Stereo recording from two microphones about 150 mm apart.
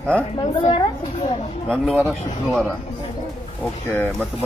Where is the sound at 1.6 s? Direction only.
5° left (ahead or behind).